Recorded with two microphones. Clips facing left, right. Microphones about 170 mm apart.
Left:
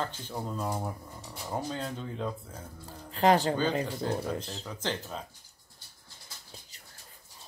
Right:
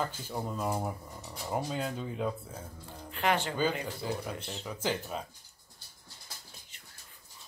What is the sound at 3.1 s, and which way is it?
Speech, 35° left (ahead or behind).